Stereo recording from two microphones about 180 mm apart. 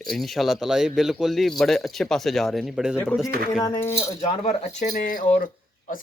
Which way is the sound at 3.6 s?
15° left (ahead or behind).